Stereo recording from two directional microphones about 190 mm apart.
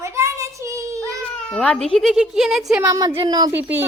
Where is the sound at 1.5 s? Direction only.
5° left (ahead or behind).